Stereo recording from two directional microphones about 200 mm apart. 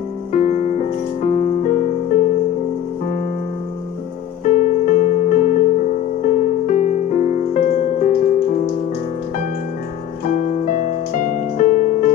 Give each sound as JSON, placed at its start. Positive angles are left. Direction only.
{"t": 0.3, "sound": "music", "side_deg": 40}
{"t": 4.5, "sound": "music", "side_deg": 40}
{"t": 10.2, "sound": "music", "side_deg": 40}